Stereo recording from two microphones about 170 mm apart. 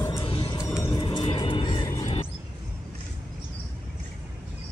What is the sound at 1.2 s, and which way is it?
Music, 30° left (ahead or behind).